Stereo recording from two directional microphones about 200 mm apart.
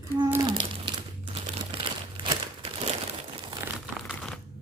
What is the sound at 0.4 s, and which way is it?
Crumpling, 25° right (ahead or behind).